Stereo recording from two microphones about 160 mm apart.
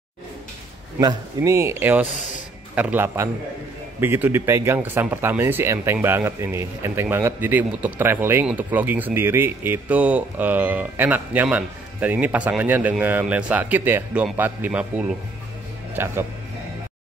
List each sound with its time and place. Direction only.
0.9 s a man's voice: 20° right (ahead or behind)